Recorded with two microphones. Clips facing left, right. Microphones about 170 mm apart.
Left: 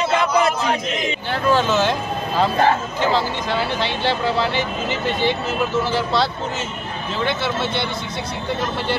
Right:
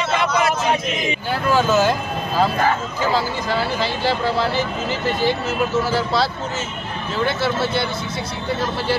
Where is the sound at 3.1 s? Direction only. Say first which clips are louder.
Even; 5° right (ahead or behind).